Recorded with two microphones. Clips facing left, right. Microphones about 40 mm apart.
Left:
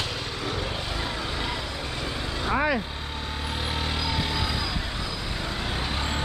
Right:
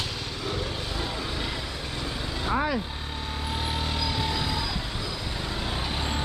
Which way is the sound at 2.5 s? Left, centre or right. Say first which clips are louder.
Left 2 dB; left.